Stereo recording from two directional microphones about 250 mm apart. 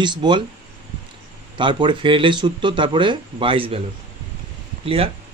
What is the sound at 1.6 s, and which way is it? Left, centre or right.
Speech, centre.